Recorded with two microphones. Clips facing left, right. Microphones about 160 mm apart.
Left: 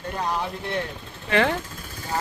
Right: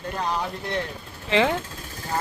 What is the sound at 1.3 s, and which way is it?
Speech, 15° right (ahead or behind).